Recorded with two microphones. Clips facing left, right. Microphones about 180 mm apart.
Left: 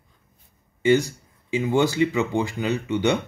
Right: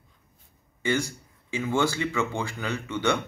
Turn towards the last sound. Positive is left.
turn(degrees=15)  # may be behind; listen again after turning